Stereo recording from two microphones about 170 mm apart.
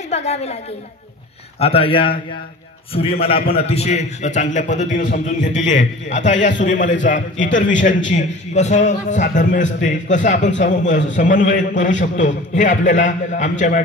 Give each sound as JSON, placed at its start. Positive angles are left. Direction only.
{"t": 0.1, "sound": "a woman's voice", "side_deg": 40}
{"t": 1.6, "sound": "a man's voice", "side_deg": 35}